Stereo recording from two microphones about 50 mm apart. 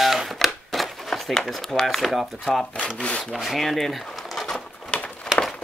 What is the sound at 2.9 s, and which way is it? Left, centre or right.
Speech, left.